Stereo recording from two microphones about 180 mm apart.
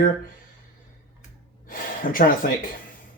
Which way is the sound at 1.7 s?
50° left (ahead or behind).